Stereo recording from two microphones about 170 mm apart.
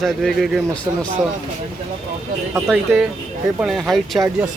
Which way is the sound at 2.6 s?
5° right (ahead or behind).